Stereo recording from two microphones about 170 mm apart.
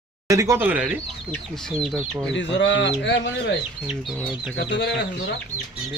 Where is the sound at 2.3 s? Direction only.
90° left.